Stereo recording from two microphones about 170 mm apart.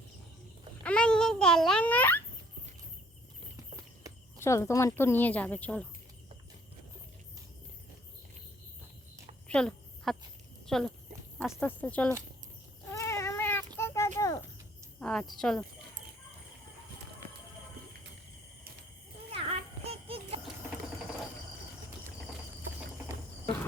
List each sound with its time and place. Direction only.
0.8 s babbling: 5° left (ahead or behind)
4.4 s speech: 15° left (ahead or behind)
9.5 s a sound: 5° left (ahead or behind)
10.7 s speech: 5° left (ahead or behind)
12.9 s cat: 15° left (ahead or behind)
14.9 s speech: 5° left (ahead or behind)
19.3 s music: 35° right (ahead or behind)